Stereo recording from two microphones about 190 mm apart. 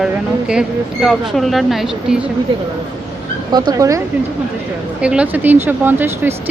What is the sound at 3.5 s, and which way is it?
Speech, 20° right (ahead or behind).